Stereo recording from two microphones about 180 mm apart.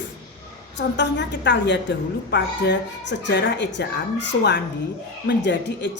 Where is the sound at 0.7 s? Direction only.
75° left (ahead or behind).